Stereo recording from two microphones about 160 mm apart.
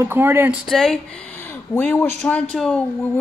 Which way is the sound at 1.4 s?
15° left (ahead or behind).